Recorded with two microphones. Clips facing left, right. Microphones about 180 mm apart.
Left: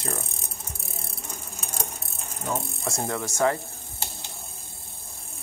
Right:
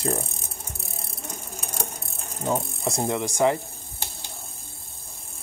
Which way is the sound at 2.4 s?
15° right (ahead or behind).